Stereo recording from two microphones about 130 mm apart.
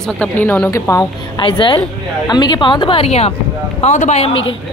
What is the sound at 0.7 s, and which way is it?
Speech, 25° left (ahead or behind).